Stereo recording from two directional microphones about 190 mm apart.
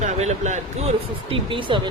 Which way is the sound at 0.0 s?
35° right (ahead or behind).